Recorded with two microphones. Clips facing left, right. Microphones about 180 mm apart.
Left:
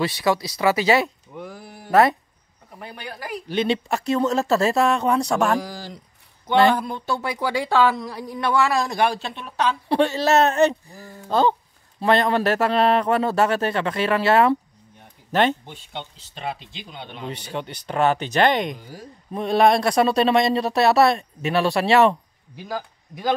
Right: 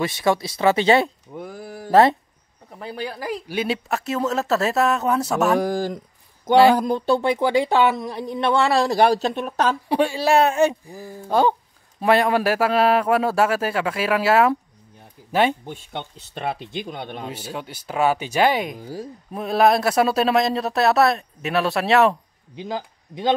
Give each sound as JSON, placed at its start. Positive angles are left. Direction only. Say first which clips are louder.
{"t": 0.0, "sound": "speech", "louder": "right 1 dB", "side_deg": -25}
{"t": 1.3, "sound": "a sound", "louder": "right 2 dB", "side_deg": -45}
{"t": 1.9, "sound": "speech", "louder": "right 2 dB", "side_deg": -25}
{"t": 3.4, "sound": "speech", "louder": "left 5 dB", "side_deg": -5}
{"t": 5.6, "sound": "a sound", "louder": "right 10 dB", "side_deg": -50}
{"t": 6.7, "sound": "speech", "louder": "right 5 dB", "side_deg": -40}
{"t": 9.8, "sound": "a man's voice", "louder": "left 2 dB", "side_deg": -10}
{"t": 15.6, "sound": "speech", "louder": "right 3 dB", "side_deg": -50}
{"t": 17.3, "sound": "a man's voice", "louder": "left 1 dB", "side_deg": -5}
{"t": 22.6, "sound": "speech", "louder": "right 2 dB", "side_deg": -20}